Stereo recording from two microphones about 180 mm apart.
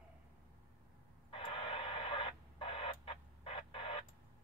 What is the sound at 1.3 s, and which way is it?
Radio, 30° left (ahead or behind).